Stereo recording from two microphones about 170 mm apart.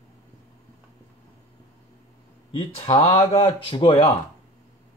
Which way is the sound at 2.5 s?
35° left (ahead or behind).